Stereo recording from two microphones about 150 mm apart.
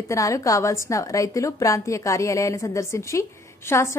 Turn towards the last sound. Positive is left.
turn(degrees=20)  # may be behind; listen again after turning